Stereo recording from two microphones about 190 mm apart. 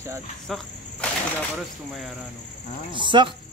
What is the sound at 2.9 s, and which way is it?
Speech, 25° right (ahead or behind).